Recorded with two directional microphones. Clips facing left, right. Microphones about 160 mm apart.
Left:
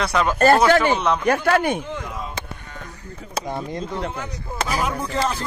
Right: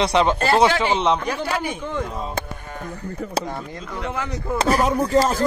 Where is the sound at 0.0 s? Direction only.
25° right (ahead or behind).